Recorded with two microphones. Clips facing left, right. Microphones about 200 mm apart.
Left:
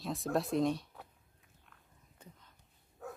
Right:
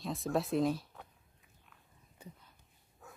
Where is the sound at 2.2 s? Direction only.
10° right (ahead or behind).